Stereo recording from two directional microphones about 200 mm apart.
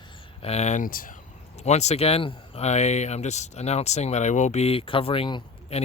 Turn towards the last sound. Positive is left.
turn(degrees=25)  # may be behind; listen again after turning